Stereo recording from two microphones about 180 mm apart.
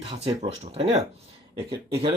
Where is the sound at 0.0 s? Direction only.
30° right (ahead or behind).